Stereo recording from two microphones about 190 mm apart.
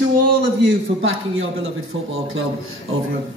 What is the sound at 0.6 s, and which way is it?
Speech, 90° right.